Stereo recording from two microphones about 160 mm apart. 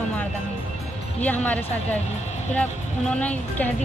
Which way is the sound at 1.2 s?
10° left (ahead or behind).